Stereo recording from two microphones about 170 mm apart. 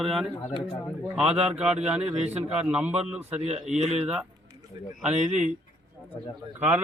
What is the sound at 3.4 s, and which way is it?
Speech, 40° right (ahead or behind).